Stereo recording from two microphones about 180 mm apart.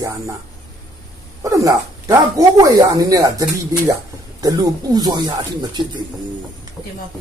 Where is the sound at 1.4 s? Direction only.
20° right (ahead or behind).